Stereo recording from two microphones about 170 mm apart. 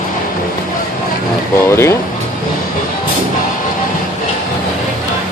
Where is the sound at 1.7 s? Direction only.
15° left (ahead or behind).